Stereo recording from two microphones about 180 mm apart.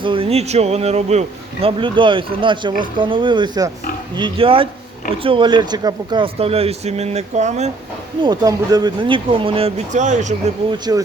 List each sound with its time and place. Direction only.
0.0 s speech: 30° right (ahead or behind)
8.2 s speech: 20° right (ahead or behind); by 10.3 s 40° right (ahead or behind)
10.7 s speech: 20° right (ahead or behind)